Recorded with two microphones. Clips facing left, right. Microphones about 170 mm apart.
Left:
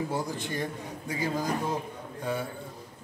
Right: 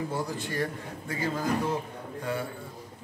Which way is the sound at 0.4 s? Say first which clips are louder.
Right 1 dB; 20° left (ahead or behind).